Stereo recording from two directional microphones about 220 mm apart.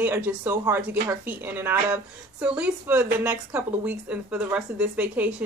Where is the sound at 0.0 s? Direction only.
10° right (ahead or behind).